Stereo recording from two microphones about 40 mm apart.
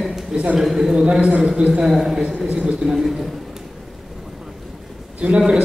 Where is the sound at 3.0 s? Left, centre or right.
Centre.